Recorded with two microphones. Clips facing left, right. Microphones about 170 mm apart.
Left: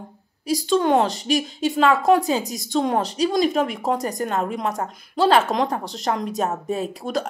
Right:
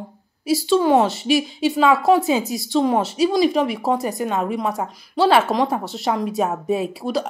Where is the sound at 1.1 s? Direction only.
40° left (ahead or behind).